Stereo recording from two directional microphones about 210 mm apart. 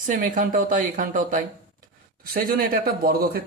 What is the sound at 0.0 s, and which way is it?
A man's voice, 40° right (ahead or behind).